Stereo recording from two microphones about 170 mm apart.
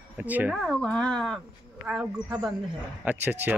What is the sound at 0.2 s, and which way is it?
Speech, 10° right (ahead or behind).